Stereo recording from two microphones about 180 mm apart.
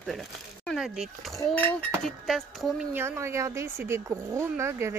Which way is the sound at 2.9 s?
15° right (ahead or behind).